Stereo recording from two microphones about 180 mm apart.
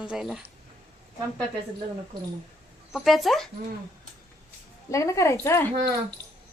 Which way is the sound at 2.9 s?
Centre (ahead or behind).